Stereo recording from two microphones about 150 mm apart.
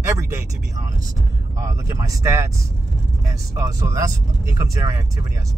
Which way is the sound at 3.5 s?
20° right (ahead or behind).